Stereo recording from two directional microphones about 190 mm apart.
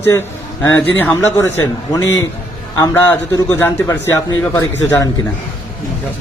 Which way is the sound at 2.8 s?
10° left (ahead or behind).